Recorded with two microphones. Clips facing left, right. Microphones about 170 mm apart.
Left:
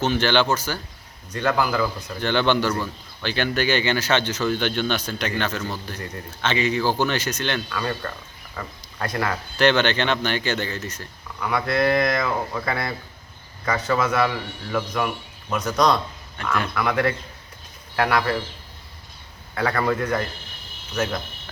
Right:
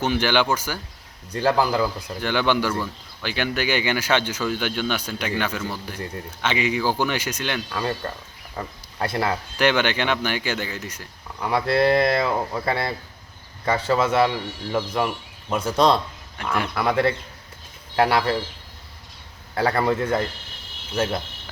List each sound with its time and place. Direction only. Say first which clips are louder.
0.0 s speech: left 1 dB; 10° right (ahead or behind)
1.3 s speech: right 2 dB; 30° right (ahead or behind)
1.8 s speech: even; 10° right (ahead or behind)
7.7 s a man's voice: right 1 dB; 25° right (ahead or behind)
9.6 s speech: left 2 dB; 10° right (ahead or behind)
11.3 s a man's voice: right 2 dB; 30° right (ahead or behind)
16.4 s speech: even; 10° right (ahead or behind)
16.7 s a man's voice: right 3 dB; 30° right (ahead or behind)
19.5 s a man's voice: right 2 dB; 25° right (ahead or behind)